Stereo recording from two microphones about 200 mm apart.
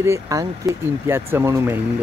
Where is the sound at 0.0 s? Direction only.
15° right (ahead or behind).